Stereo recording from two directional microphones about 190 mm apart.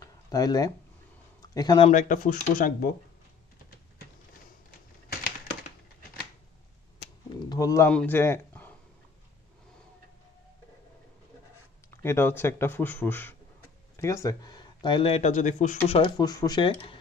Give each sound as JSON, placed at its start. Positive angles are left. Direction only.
{"t": 0.0, "sound": "a sound", "side_deg": 20}
{"t": 1.5, "sound": "speech", "side_deg": 20}
{"t": 1.9, "sound": "speech", "side_deg": 45}
{"t": 7.3, "sound": "a sound", "side_deg": 20}
{"t": 7.9, "sound": "speech", "side_deg": 10}
{"t": 11.9, "sound": "speech", "side_deg": 10}
{"t": 16.2, "sound": "speech", "side_deg": 20}